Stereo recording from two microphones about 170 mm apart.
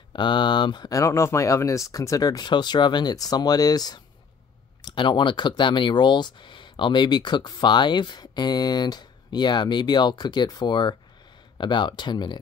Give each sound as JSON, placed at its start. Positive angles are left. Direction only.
{"t": 0.1, "sound": "speech", "side_deg": 25}